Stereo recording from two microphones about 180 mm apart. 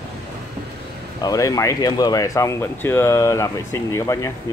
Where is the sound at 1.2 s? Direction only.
20° left (ahead or behind).